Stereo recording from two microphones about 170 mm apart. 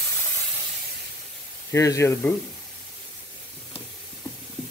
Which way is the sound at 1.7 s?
20° left (ahead or behind).